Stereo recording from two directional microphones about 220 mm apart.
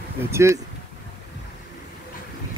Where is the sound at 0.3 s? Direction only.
10° right (ahead or behind).